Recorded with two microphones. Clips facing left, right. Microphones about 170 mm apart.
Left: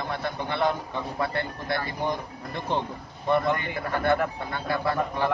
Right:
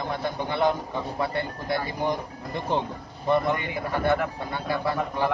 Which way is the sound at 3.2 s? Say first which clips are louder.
Right 1 dB; 10° right (ahead or behind).